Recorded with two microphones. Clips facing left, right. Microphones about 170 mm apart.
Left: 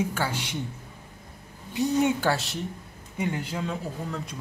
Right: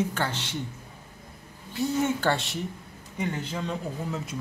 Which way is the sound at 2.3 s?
Centre (ahead or behind).